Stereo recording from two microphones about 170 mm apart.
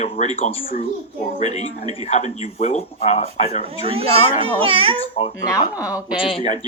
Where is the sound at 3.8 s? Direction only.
35° right (ahead or behind).